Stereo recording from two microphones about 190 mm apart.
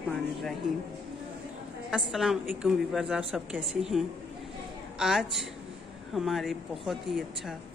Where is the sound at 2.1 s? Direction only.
Centre (ahead or behind).